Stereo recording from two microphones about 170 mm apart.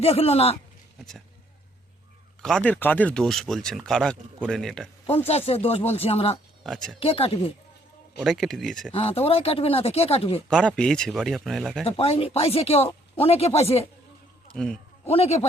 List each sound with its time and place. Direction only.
0.0 s speech: 35° left (ahead or behind)
2.4 s speech: 5° left (ahead or behind)
5.1 s speech: 35° left (ahead or behind)
6.6 s speech: centre (ahead or behind)
7.0 s speech: 35° left (ahead or behind)
8.2 s speech: centre (ahead or behind)
8.9 s speech: 35° left (ahead or behind)
10.5 s speech: 5° left (ahead or behind)
11.9 s speech: 35° left (ahead or behind)
14.5 s speech: 5° left (ahead or behind)
15.1 s speech: 35° left (ahead or behind)